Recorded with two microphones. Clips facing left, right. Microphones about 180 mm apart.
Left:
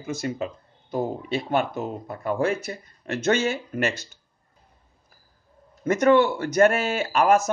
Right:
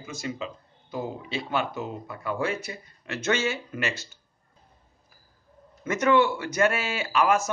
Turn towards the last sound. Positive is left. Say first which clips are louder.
# left 4 dB
turn(degrees=45)  # may be behind; listen again after turning